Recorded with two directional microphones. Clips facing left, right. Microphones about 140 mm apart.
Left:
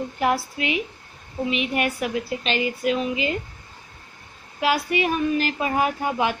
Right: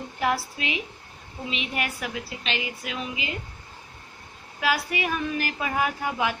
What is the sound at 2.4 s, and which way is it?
Speech, 45° left (ahead or behind).